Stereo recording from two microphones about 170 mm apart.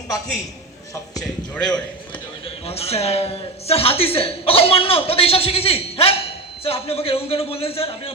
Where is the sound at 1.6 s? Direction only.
25° left (ahead or behind).